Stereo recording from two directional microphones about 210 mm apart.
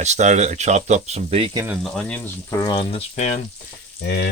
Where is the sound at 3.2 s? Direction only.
35° left (ahead or behind).